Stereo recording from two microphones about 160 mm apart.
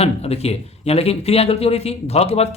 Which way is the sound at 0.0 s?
40° left (ahead or behind).